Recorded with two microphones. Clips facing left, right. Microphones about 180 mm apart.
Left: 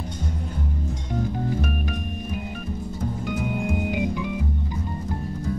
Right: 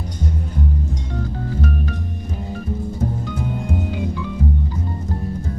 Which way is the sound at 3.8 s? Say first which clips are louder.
Even; 15° left (ahead or behind).